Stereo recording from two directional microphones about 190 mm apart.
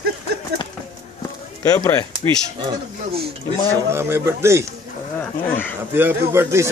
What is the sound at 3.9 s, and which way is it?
Speech, 15° right (ahead or behind).